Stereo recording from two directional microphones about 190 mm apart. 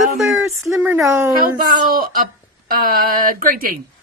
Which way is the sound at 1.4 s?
50° right (ahead or behind).